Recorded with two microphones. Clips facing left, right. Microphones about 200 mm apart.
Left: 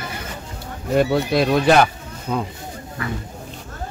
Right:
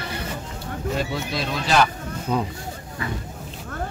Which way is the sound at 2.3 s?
5° right (ahead or behind).